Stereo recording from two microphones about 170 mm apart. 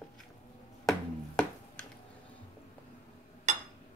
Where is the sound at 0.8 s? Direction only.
5° left (ahead or behind).